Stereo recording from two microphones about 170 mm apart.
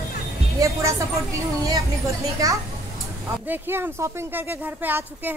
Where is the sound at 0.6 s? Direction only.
20° right (ahead or behind).